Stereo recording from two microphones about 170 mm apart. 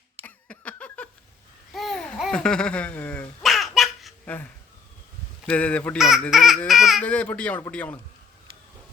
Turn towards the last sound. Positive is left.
turn(degrees=10)  # may be behind; listen again after turning